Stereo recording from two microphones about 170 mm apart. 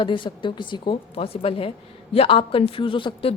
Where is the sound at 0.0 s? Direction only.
30° left (ahead or behind).